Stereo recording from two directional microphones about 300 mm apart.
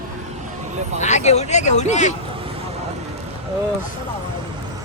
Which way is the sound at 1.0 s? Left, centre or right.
Left.